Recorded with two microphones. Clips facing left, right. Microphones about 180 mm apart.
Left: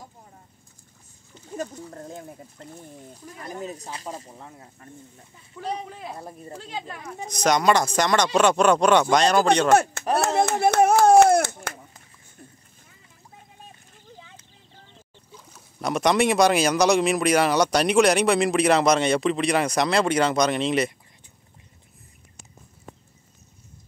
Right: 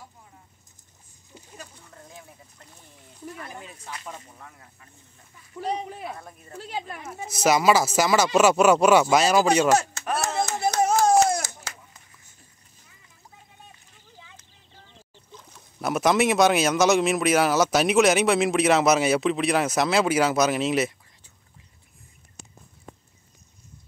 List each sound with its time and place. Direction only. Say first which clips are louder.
1.6 s speech: left 15 dB; 40° left (ahead or behind)
5.5 s speech: right 2 dB; 10° right (ahead or behind)
6.0 s speech: left 1 dB; 30° left (ahead or behind)
6.6 s a man's voice: right 3 dB; 10° right (ahead or behind)
9.7 s speech: left 3 dB; 55° left (ahead or behind)
15.8 s a man's voice: even; 5° right (ahead or behind)